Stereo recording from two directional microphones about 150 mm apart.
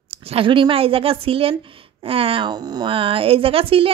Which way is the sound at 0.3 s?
35° right (ahead or behind).